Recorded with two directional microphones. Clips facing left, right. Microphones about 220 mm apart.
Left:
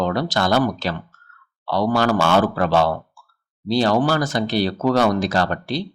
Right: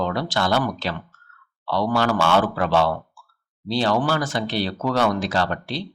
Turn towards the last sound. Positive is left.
turn(degrees=45)  # may be behind; listen again after turning